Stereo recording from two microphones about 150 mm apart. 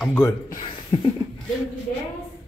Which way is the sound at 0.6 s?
30° left (ahead or behind).